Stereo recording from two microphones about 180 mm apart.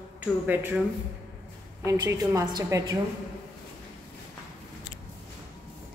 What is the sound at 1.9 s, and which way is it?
A woman's voice, 20° right (ahead or behind).